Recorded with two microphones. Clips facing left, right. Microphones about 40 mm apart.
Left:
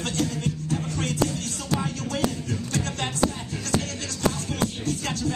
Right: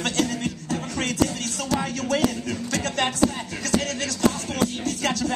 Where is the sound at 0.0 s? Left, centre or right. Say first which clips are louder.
Right 2 dB; right.